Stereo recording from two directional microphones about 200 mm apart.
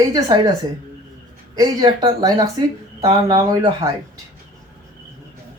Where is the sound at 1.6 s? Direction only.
20° right (ahead or behind).